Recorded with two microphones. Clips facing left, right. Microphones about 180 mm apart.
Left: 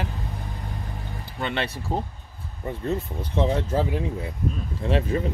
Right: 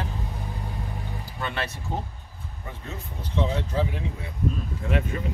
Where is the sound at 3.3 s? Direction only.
50° left (ahead or behind).